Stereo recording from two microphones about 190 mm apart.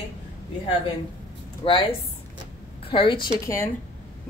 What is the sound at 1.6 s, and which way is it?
A woman's voice, 25° left (ahead or behind).